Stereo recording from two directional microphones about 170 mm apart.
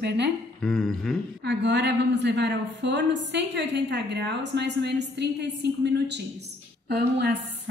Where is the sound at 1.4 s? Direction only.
90° right.